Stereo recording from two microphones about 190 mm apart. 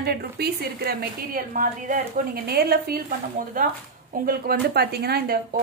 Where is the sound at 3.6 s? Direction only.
45° right (ahead or behind).